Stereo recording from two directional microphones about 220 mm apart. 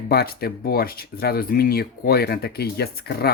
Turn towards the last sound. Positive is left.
turn(degrees=45)  # may be behind; listen again after turning